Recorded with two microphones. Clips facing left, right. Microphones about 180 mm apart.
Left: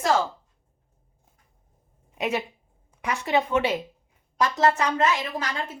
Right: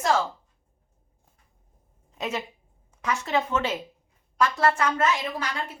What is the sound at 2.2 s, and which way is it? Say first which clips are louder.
A woman's voice: left 4 dB; 15° left (ahead or behind).